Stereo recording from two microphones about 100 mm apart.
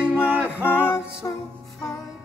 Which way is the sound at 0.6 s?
20° left (ahead or behind).